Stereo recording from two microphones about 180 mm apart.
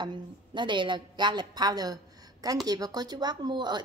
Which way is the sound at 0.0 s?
25° right (ahead or behind).